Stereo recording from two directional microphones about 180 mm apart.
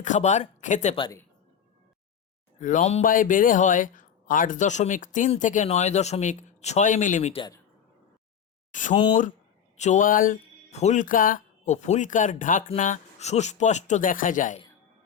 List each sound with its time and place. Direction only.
0.0 s speech: 40° left (ahead or behind)
2.6 s speech: 45° left (ahead or behind)
8.7 s speech: 45° left (ahead or behind)